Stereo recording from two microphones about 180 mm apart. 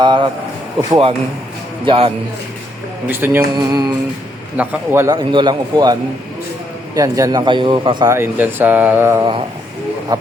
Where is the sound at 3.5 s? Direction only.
25° right (ahead or behind).